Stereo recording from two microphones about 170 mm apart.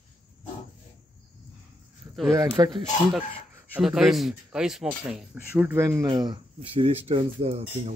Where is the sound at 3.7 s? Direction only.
5° right (ahead or behind).